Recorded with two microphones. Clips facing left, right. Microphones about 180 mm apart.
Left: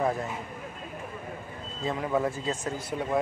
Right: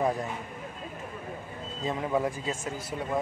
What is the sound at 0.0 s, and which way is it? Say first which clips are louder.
Speech: even; 15° right (ahead or behind).